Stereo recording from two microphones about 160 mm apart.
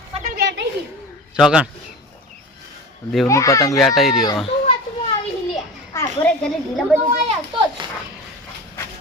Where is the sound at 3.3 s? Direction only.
20° left (ahead or behind).